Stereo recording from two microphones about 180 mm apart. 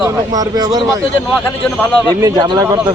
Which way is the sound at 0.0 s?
20° right (ahead or behind).